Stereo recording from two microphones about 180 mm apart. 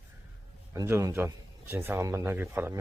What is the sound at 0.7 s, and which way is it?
Speech, 15° right (ahead or behind).